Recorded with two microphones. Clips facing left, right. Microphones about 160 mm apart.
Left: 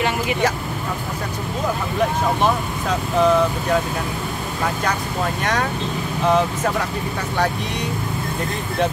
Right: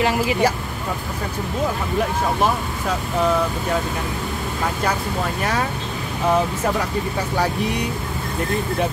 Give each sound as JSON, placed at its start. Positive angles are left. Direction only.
{"t": 0.0, "sound": "speech", "side_deg": -30}